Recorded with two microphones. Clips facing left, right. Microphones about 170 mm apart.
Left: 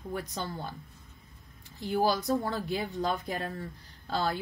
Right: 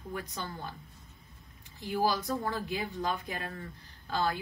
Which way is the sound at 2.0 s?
35° left (ahead or behind).